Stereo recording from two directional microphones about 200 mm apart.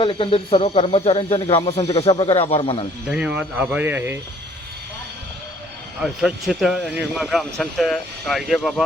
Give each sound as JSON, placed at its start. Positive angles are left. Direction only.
{"t": 0.0, "sound": "speech", "side_deg": 25}
{"t": 3.1, "sound": "speech", "side_deg": -5}
{"t": 6.0, "sound": "speech", "side_deg": -5}